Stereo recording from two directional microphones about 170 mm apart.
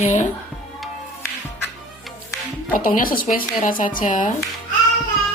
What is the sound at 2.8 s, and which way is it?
Speech, 55° left (ahead or behind).